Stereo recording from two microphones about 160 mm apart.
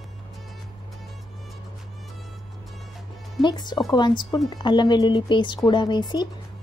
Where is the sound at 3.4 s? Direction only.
30° left (ahead or behind).